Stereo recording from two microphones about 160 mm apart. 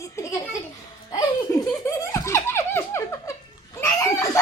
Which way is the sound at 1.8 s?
20° left (ahead or behind).